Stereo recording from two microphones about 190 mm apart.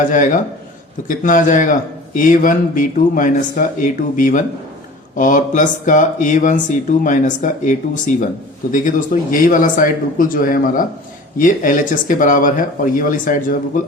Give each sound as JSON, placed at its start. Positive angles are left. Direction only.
{"t": 0.0, "sound": "a man's voice", "side_deg": 45}